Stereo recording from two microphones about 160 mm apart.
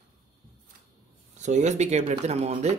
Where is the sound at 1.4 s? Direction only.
45° right (ahead or behind).